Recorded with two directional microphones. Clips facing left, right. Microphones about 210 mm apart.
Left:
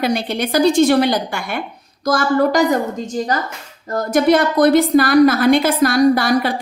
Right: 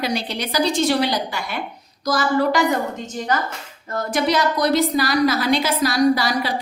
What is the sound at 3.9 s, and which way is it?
A woman's voice, 45° left (ahead or behind).